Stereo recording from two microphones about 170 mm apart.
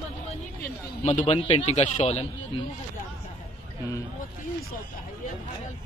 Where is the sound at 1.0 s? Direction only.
40° left (ahead or behind).